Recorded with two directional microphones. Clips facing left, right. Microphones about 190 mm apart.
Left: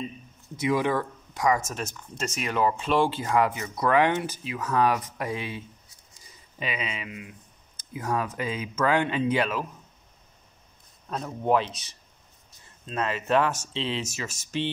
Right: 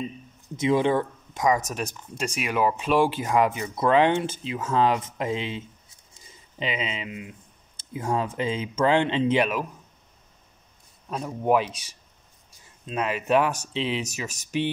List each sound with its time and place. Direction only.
0.6 s speech: 25° right (ahead or behind)
11.1 s speech: 10° right (ahead or behind)